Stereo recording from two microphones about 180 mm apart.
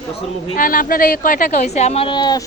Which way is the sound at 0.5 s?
50° left (ahead or behind).